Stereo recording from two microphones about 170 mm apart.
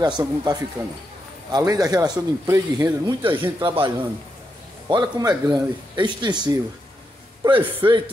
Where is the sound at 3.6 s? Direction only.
30° right (ahead or behind).